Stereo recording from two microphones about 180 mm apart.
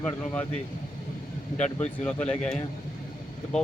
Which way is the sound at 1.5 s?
40° left (ahead or behind).